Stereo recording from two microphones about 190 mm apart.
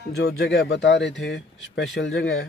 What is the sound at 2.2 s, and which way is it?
Speech, 90° left.